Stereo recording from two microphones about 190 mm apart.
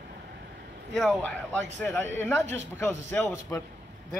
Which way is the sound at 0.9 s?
5° left (ahead or behind).